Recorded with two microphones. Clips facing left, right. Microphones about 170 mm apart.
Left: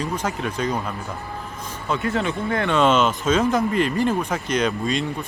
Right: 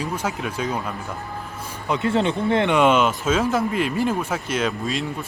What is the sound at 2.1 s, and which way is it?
Speech, 30° right (ahead or behind).